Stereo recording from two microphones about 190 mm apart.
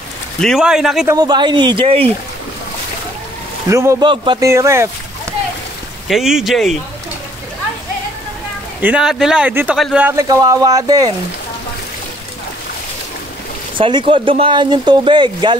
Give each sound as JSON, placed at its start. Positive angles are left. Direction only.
{"t": 0.4, "sound": "speech", "side_deg": 0}
{"t": 1.0, "sound": "speech", "side_deg": -20}
{"t": 3.6, "sound": "speech", "side_deg": -15}
{"t": 6.0, "sound": "speech", "side_deg": 0}
{"t": 8.8, "sound": "speech", "side_deg": -5}
{"t": 10.0, "sound": "speech", "side_deg": -15}
{"t": 13.7, "sound": "speech", "side_deg": -25}